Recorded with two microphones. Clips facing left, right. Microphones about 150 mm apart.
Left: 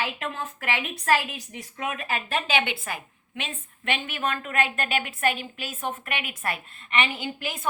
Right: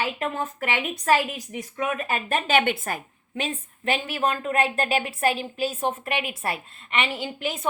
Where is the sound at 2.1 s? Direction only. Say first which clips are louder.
Right 4 dB; 50° right (ahead or behind).